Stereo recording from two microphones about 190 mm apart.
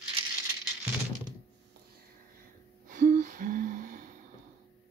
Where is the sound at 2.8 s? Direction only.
45° right (ahead or behind).